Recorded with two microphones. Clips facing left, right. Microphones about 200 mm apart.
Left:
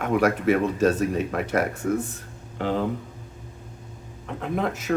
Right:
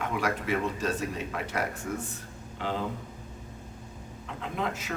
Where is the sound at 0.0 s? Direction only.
50° left (ahead or behind).